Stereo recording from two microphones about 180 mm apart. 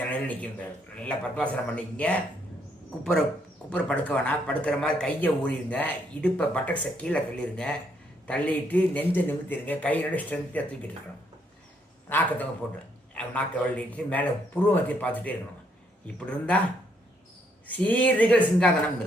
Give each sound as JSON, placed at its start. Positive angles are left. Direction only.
{"t": 0.0, "sound": "a man's voice", "side_deg": 10}
{"t": 12.0, "sound": "a man's voice", "side_deg": 10}
{"t": 17.7, "sound": "speech", "side_deg": 10}